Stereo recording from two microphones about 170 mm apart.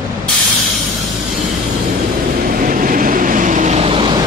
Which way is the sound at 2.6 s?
55° right (ahead or behind).